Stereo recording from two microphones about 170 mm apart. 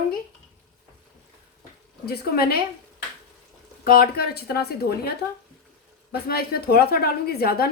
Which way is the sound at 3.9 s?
65° left (ahead or behind).